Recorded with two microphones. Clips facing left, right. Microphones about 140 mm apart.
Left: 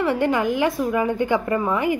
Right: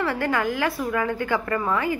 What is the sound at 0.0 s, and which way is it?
A woman's voice, 20° left (ahead or behind).